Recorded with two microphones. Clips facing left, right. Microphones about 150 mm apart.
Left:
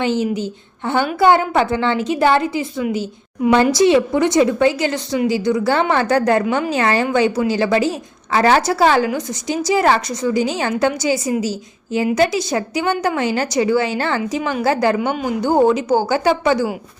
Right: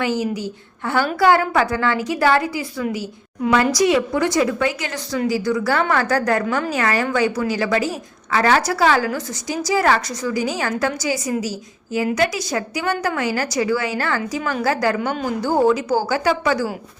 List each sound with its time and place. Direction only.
0.0 s a woman's voice: 25° left (ahead or behind)